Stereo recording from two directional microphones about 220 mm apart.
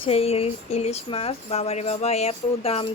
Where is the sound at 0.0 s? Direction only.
25° left (ahead or behind).